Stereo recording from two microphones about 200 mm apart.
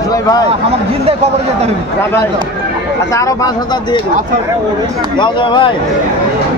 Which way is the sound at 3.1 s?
15° left (ahead or behind).